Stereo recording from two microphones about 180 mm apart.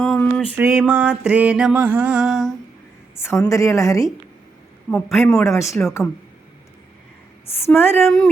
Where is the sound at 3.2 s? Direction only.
15° left (ahead or behind).